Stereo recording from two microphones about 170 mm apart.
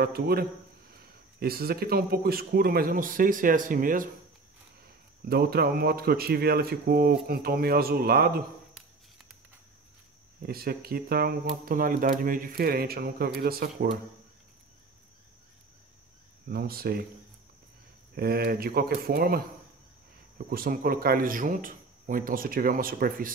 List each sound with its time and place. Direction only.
0.0 s speech: 65° right (ahead or behind)
5.2 s speech: 65° right (ahead or behind)
10.4 s speech: 65° right (ahead or behind)
16.4 s speech: 60° right (ahead or behind)
18.1 s speech: 65° right (ahead or behind)